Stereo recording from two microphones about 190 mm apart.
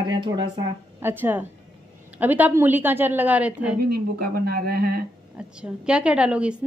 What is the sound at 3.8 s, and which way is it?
Speech, 55° right (ahead or behind).